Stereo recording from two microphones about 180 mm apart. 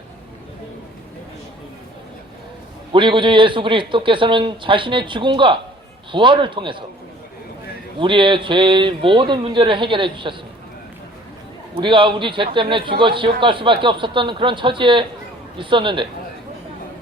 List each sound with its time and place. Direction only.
2.9 s a man's voice: 25° right (ahead or behind)
7.9 s a man's voice: 25° right (ahead or behind)
11.8 s a man's voice: 25° right (ahead or behind)